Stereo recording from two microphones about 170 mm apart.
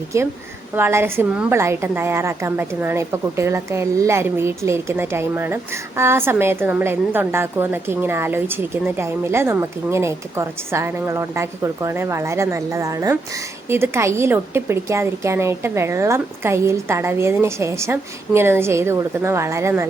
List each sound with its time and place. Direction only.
0.1 s a woman's voice: 15° right (ahead or behind)